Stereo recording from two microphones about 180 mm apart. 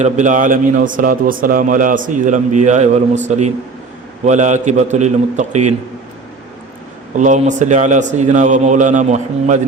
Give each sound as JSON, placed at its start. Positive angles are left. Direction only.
{"t": 0.0, "sound": "a man's voice", "side_deg": -45}
{"t": 7.2, "sound": "a man's voice", "side_deg": -40}